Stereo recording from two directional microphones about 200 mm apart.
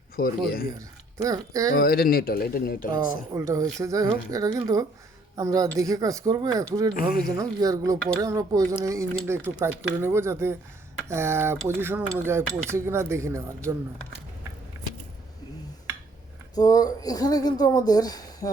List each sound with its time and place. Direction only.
0.2 s speech: 50° left (ahead or behind)
0.8 s speech: 15° right (ahead or behind)
1.7 s speech: 50° left (ahead or behind)
2.9 s speech: 20° right (ahead or behind)
6.9 s speech: 45° left (ahead or behind)
7.3 s speech: 15° right (ahead or behind)
16.6 s speech: 20° left (ahead or behind)